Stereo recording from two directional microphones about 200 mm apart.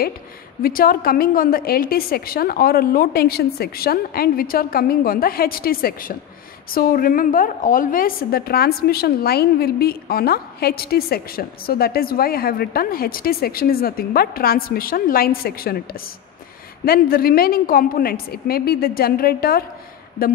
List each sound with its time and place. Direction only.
0.6 s a woman's voice: 45° left (ahead or behind)